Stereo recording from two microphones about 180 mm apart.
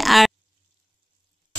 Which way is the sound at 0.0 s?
Centre (ahead or behind).